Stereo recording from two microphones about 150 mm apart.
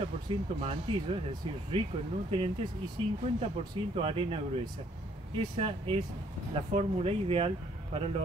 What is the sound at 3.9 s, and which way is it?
Speech, 40° right (ahead or behind).